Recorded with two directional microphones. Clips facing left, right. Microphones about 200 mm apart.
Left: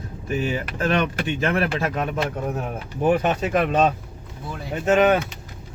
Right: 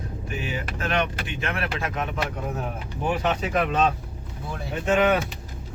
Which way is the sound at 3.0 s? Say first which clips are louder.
Left 5 dB; 50° left (ahead or behind).